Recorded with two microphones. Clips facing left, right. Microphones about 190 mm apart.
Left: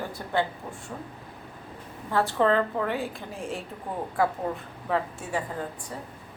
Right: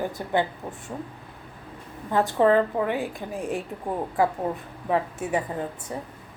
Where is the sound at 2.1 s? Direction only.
15° right (ahead or behind).